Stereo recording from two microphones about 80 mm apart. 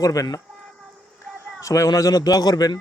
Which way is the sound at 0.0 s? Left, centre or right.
Left.